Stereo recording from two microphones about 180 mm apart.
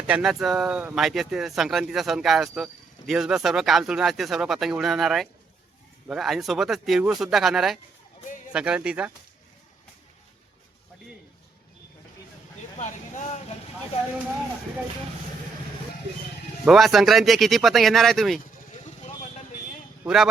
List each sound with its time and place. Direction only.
0.1 s speech: 5° right (ahead or behind)
12.8 s vehicle: 40° left (ahead or behind)
16.6 s speech: centre (ahead or behind)